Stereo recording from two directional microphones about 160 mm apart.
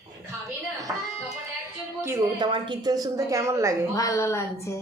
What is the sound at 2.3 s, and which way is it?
A woman's voice, 30° right (ahead or behind).